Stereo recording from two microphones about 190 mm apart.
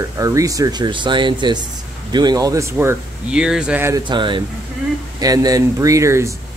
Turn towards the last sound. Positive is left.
turn(degrees=-15)  # may be behind; listen again after turning